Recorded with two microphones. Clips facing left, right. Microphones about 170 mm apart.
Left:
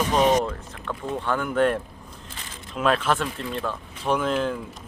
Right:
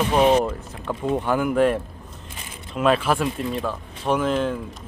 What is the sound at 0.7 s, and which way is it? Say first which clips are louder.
Speech: right 9 dB; 25° right (ahead or behind).